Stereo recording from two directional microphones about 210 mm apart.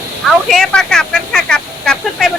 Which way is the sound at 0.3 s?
Centre (ahead or behind).